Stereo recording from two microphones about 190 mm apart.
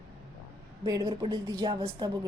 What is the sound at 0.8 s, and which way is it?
Speech, 20° right (ahead or behind).